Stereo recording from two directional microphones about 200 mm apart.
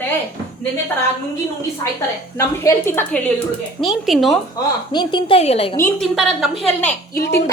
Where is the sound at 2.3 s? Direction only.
15° left (ahead or behind).